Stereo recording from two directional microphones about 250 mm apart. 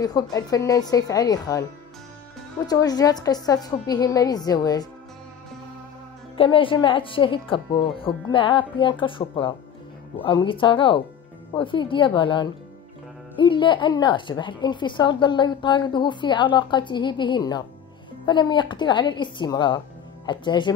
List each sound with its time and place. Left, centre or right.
0.0 s a woman's voice: centre
6.3 s a woman's voice: left